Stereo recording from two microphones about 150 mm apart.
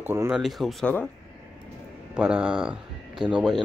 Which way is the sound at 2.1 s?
5° right (ahead or behind).